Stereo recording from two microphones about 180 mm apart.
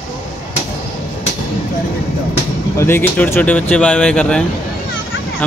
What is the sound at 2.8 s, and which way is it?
Speech, 10° left (ahead or behind).